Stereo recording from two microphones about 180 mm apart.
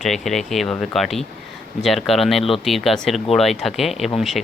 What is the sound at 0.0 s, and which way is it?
Speech, centre (ahead or behind).